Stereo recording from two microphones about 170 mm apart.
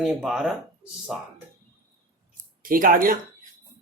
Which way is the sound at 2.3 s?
55° right (ahead or behind).